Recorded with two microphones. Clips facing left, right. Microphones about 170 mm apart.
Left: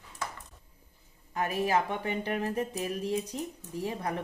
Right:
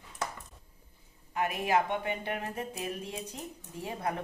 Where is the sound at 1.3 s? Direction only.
35° left (ahead or behind).